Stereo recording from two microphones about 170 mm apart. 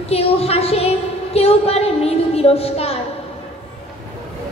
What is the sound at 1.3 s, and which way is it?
Child singing, 35° left (ahead or behind).